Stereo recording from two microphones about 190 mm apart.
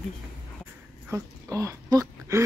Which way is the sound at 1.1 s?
15° right (ahead or behind).